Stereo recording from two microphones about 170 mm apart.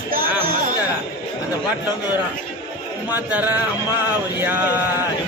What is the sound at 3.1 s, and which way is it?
Speech, 10° right (ahead or behind).